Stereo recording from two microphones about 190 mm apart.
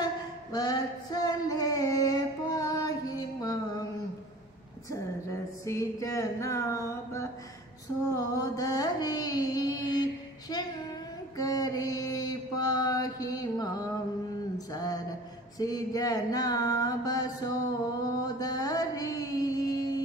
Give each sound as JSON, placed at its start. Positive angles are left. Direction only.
{"t": 0.0, "sound": "a sound", "side_deg": 20}
{"t": 4.9, "sound": "a sound", "side_deg": 15}
{"t": 8.2, "sound": "carnatic music", "side_deg": 20}
{"t": 11.3, "sound": "mantra", "side_deg": 20}
{"t": 14.7, "sound": "music", "side_deg": 20}
{"t": 18.0, "sound": "mantra", "side_deg": 20}